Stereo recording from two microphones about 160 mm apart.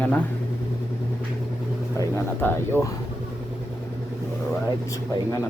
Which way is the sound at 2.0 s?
15° left (ahead or behind).